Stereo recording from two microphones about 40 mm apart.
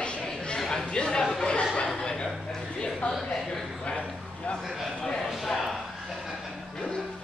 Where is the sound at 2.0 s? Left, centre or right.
Left.